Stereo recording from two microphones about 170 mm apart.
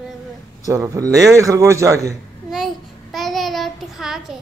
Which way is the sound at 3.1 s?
Centre (ahead or behind).